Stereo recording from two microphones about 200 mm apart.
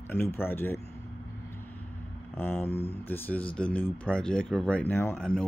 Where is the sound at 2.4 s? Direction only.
10° left (ahead or behind).